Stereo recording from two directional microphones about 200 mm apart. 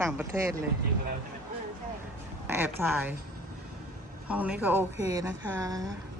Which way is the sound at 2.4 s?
10° right (ahead or behind).